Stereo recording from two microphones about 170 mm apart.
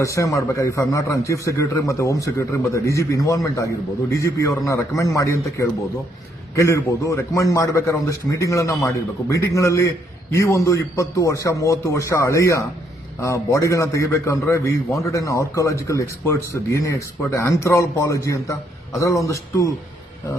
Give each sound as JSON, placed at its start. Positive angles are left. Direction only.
{"t": 0.0, "sound": "a man's voice", "side_deg": 20}